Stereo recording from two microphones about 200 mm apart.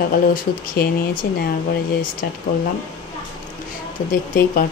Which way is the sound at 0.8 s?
50° left (ahead or behind).